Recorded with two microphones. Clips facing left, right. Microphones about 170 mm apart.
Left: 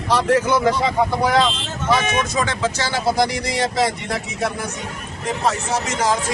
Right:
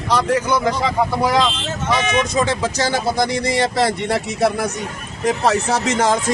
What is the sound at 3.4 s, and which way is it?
Speech, 65° right (ahead or behind).